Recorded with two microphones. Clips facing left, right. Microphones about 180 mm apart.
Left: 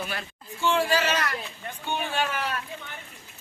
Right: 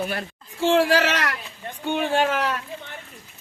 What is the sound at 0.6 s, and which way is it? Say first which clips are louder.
A man's voice: right 5 dB; 90° right.